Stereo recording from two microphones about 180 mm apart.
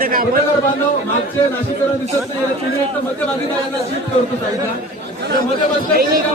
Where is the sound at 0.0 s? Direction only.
55° right (ahead or behind).